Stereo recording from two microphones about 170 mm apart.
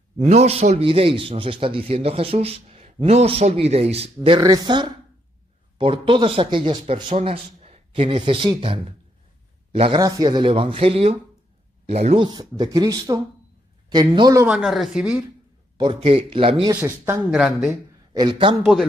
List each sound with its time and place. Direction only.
0.2 s speech: 40° right (ahead or behind)
4.4 s a man's voice: 25° right (ahead or behind)
9.9 s speech: 20° right (ahead or behind)
14.4 s speech: 5° right (ahead or behind)
15.8 s speech: 30° right (ahead or behind)
16.8 s speech: 15° right (ahead or behind)
17.3 s speech: centre (ahead or behind)
18.1 s speech: 25° right (ahead or behind)
18.6 s speech: centre (ahead or behind)